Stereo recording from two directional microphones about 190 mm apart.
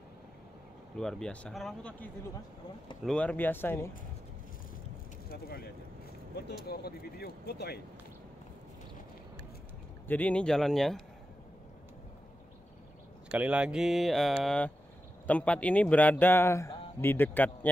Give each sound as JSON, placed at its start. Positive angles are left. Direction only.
{"t": 0.9, "sound": "speech", "side_deg": 5}
{"t": 3.1, "sound": "speech", "side_deg": 5}
{"t": 6.3, "sound": "speech", "side_deg": 55}
{"t": 10.0, "sound": "speech", "side_deg": 10}
{"t": 13.3, "sound": "speech", "side_deg": -5}